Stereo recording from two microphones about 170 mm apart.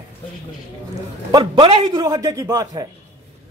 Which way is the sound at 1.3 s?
30° right (ahead or behind).